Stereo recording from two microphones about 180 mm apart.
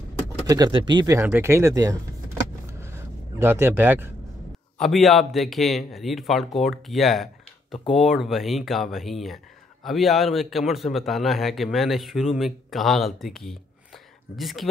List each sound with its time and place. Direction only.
0.5 s speech: 25° right (ahead or behind)
3.3 s speech: 15° right (ahead or behind)
4.7 s a man's voice: centre (ahead or behind)